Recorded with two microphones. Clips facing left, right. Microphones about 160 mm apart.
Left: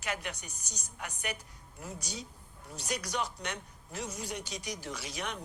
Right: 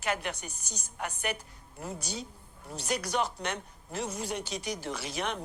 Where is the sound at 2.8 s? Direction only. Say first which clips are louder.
Right 5 dB; 55° right (ahead or behind).